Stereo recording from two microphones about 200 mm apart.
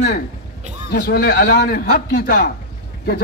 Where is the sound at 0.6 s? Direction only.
35° right (ahead or behind).